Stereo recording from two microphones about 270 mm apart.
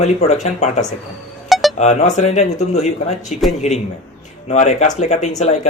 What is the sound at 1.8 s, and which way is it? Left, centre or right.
Speech, left.